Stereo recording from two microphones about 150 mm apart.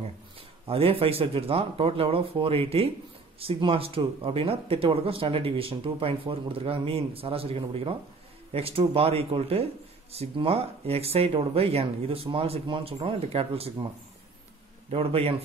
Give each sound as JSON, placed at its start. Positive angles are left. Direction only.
{"t": 0.7, "sound": "speech", "side_deg": -40}
{"t": 14.9, "sound": "speech", "side_deg": -40}